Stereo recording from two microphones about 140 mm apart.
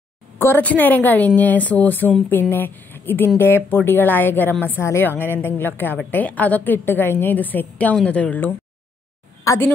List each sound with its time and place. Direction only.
0.4 s a woman's voice: 15° left (ahead or behind)